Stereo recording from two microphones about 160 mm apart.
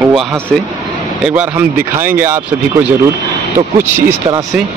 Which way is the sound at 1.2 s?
10° right (ahead or behind).